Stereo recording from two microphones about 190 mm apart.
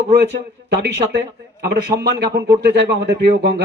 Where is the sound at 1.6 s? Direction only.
60° right (ahead or behind).